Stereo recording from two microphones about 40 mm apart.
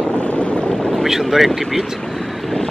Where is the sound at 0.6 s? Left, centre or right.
Centre.